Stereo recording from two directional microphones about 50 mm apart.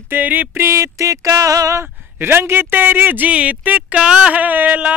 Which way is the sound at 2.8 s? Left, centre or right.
Right.